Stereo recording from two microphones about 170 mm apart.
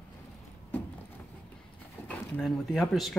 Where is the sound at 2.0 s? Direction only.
5° left (ahead or behind).